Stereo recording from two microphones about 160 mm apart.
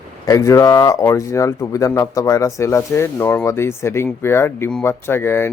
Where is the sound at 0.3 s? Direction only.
20° left (ahead or behind).